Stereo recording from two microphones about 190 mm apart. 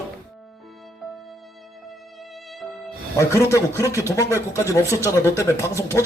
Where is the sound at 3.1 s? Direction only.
15° left (ahead or behind).